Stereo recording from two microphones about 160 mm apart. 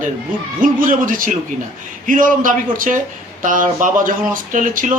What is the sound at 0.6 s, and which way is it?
Speech, 55° right (ahead or behind).